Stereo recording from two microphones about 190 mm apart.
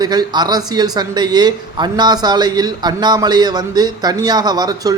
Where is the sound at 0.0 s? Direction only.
20° right (ahead or behind).